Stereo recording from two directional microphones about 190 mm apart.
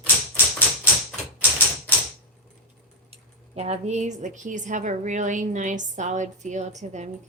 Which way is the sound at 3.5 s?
35° right (ahead or behind).